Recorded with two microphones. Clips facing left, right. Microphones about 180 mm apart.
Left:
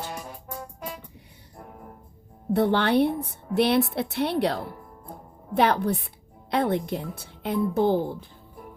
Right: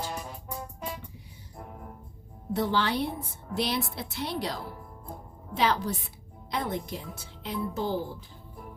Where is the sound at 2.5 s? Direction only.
60° left (ahead or behind).